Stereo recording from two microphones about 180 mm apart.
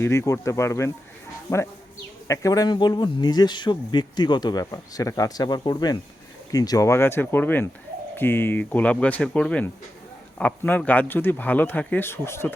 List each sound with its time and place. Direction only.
0.0 s speech: 15° left (ahead or behind)